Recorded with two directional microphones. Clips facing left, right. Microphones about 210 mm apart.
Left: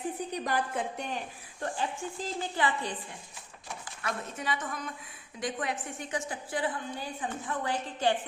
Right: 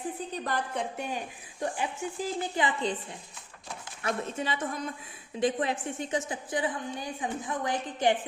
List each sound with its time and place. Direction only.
0.3 s a woman's voice: 10° left (ahead or behind)
0.9 s a woman's voice: 10° right (ahead or behind)
4.0 s a woman's voice: 25° right (ahead or behind)